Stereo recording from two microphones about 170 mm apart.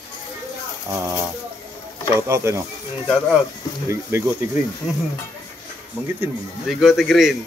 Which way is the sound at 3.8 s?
15° right (ahead or behind).